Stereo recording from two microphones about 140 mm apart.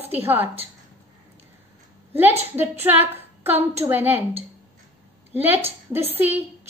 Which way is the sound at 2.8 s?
15° right (ahead or behind).